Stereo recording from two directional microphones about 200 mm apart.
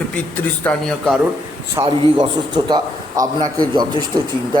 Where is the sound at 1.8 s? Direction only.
20° right (ahead or behind).